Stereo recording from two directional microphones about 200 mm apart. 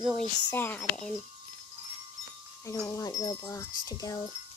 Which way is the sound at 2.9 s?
15° left (ahead or behind).